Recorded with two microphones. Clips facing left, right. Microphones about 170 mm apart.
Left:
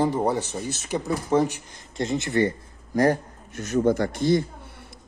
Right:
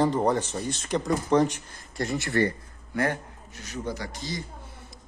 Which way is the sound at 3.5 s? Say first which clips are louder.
Left 12 dB; 50° left (ahead or behind).